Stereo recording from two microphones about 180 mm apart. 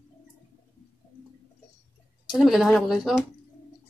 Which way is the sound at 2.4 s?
Centre (ahead or behind).